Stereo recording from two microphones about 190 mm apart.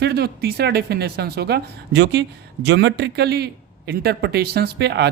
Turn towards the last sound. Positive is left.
turn(degrees=-60)  # may be behind; listen again after turning